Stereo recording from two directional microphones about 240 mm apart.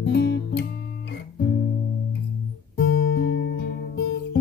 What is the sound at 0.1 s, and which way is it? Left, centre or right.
Music, left.